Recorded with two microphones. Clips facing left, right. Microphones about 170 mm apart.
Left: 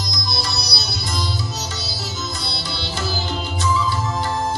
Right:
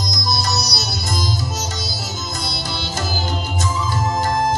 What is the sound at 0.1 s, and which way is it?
Sitar, 45° right (ahead or behind).